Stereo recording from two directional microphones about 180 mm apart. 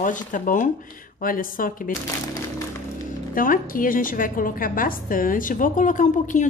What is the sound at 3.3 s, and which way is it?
A woman's voice, 50° left (ahead or behind).